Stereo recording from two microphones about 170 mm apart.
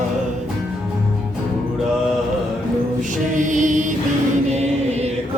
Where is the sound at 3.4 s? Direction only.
50° right (ahead or behind).